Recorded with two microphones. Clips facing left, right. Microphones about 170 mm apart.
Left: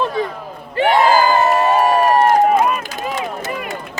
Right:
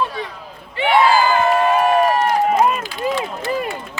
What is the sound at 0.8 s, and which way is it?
Run, 45° left (ahead or behind).